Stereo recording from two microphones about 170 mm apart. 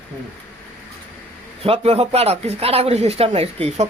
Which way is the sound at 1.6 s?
35° right (ahead or behind).